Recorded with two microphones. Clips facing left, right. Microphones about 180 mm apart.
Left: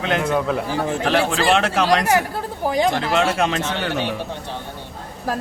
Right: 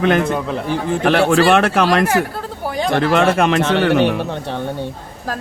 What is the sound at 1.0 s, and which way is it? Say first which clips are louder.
A man's voice: right 7 dB; 60° right (ahead or behind).